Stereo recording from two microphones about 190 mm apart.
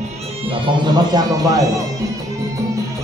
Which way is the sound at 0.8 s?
20° right (ahead or behind).